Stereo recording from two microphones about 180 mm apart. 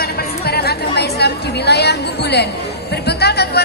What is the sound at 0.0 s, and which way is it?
Chatter, 60° left (ahead or behind).